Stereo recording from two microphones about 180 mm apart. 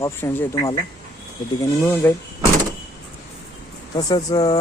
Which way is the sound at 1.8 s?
10° left (ahead or behind).